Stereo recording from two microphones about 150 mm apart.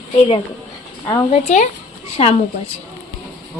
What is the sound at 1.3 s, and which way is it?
Speech, 50° left (ahead or behind).